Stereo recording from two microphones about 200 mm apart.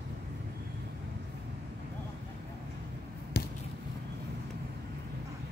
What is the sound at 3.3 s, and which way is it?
Basketball bounce, 55° left (ahead or behind).